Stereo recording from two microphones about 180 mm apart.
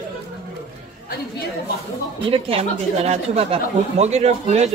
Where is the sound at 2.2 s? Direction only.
30° right (ahead or behind).